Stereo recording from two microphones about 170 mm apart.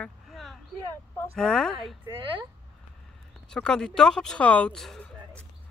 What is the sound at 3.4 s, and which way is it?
Speech, 5° left (ahead or behind).